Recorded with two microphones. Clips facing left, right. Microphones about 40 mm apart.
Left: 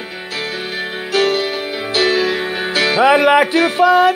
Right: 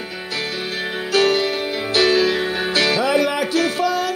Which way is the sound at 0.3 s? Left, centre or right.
Centre.